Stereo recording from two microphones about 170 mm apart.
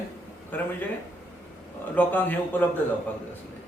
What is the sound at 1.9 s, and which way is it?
Speech, 10° left (ahead or behind).